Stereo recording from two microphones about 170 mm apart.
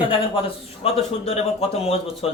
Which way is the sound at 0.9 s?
40° left (ahead or behind).